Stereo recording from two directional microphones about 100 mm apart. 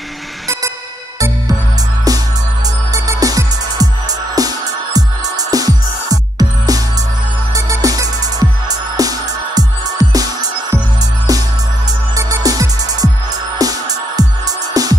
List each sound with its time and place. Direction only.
2.9 s music: 35° right (ahead or behind)
12.2 s music: 35° right (ahead or behind)